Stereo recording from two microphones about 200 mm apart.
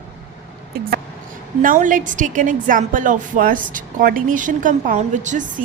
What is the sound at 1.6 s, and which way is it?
A woman's voice, 40° right (ahead or behind).